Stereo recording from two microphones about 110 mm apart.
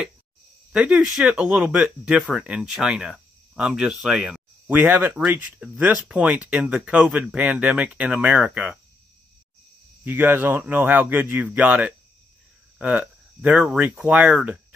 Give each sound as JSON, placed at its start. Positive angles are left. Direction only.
{"t": 0.7, "sound": "speech", "side_deg": -10}
{"t": 10.0, "sound": "speech", "side_deg": -15}